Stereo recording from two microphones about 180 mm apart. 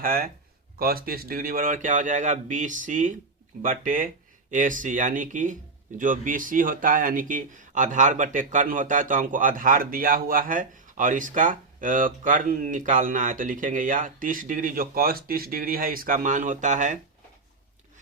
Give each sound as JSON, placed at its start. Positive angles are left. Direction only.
{"t": 0.0, "sound": "speech", "side_deg": -50}